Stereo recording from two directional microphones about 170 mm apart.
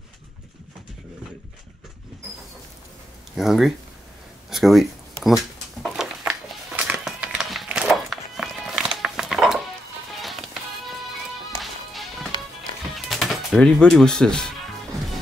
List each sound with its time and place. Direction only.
3.3 s speech: centre (ahead or behind)
4.5 s a sound: centre (ahead or behind)
6.8 s music: 10° right (ahead or behind)
11.6 s music: centre (ahead or behind)